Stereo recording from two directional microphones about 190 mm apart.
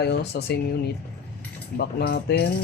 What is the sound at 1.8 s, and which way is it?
Speech, 55° left (ahead or behind).